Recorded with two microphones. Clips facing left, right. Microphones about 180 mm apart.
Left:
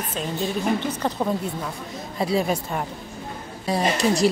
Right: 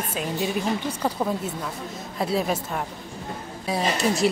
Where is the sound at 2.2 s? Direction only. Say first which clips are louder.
Left 2 dB; centre (ahead or behind).